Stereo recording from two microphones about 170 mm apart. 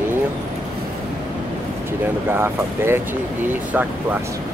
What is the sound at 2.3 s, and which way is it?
Speech, 15° right (ahead or behind).